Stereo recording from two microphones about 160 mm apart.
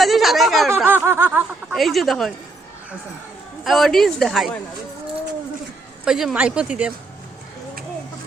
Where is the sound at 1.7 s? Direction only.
Centre (ahead or behind).